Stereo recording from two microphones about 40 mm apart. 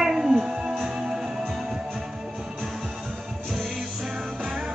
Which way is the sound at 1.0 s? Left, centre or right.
Centre.